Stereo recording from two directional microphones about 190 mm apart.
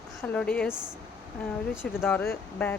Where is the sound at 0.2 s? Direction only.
5° left (ahead or behind).